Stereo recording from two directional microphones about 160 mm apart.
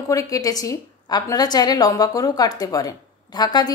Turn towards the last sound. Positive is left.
turn(degrees=25)  # may be behind; listen again after turning